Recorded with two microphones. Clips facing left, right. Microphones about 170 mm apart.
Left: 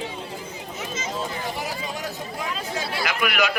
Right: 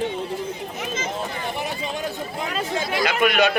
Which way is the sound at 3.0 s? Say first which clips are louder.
Right 5 dB; 25° right (ahead or behind).